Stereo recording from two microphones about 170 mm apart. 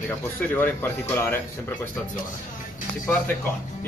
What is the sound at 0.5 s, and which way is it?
Speech, 10° left (ahead or behind).